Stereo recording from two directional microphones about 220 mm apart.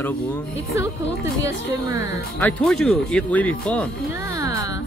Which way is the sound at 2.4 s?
Centre (ahead or behind).